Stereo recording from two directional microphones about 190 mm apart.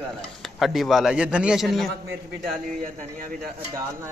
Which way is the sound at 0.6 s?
Centre (ahead or behind).